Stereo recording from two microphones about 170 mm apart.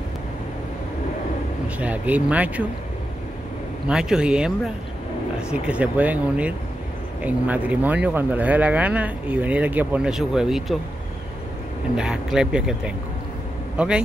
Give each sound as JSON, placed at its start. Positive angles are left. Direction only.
{"t": 1.8, "sound": "speech", "side_deg": -10}
{"t": 3.9, "sound": "speech", "side_deg": -5}
{"t": 5.5, "sound": "speech", "side_deg": -5}
{"t": 12.0, "sound": "speech", "side_deg": -5}